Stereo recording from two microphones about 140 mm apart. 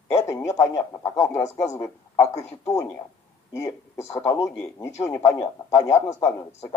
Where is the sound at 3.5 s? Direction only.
20° left (ahead or behind).